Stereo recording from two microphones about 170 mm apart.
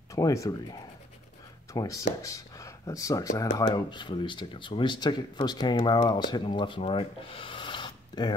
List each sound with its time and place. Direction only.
0.1 s speech: 20° left (ahead or behind)